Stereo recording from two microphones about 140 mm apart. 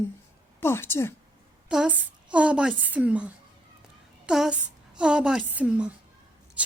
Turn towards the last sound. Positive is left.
turn(degrees=-10)  # may be behind; listen again after turning